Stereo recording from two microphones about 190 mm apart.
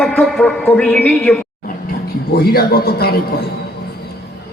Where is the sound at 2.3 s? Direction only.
55° left (ahead or behind).